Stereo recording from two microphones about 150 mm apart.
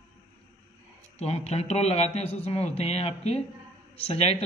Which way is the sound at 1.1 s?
45° left (ahead or behind).